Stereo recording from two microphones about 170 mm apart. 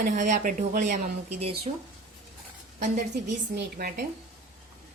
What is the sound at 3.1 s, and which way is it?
Speech, 70° right (ahead or behind).